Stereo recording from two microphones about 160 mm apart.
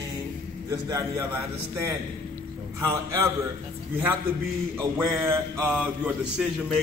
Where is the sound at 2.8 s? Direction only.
20° right (ahead or behind).